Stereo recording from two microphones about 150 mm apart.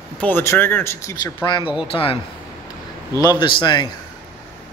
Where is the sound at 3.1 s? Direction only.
30° left (ahead or behind).